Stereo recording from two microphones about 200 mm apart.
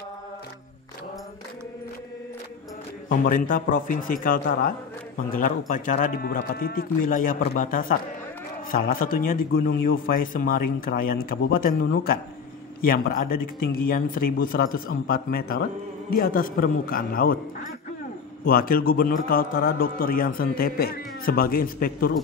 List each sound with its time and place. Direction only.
3.1 s a man's voice: 45° left (ahead or behind)
18.4 s a man's voice: 45° left (ahead or behind)